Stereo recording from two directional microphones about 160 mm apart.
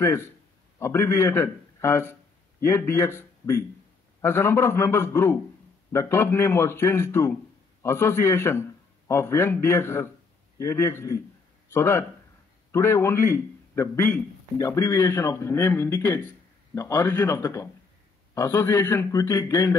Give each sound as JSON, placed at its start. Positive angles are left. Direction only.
{"t": 0.0, "sound": "a man's voice", "side_deg": 15}